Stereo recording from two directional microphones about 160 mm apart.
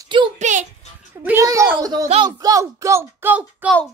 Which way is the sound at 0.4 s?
50° right (ahead or behind).